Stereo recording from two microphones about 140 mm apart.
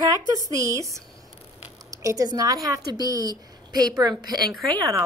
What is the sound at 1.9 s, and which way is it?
Speech, 25° right (ahead or behind).